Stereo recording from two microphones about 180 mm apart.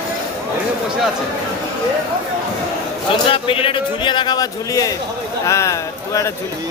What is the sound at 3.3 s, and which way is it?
Speech, 30° left (ahead or behind).